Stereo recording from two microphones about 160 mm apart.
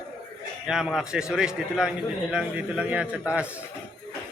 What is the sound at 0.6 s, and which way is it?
A man's voice, 5° right (ahead or behind).